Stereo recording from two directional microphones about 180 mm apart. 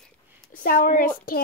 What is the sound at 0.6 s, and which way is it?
Speech, 50° left (ahead or behind).